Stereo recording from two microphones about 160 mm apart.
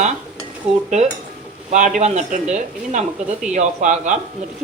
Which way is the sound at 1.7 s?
50° right (ahead or behind).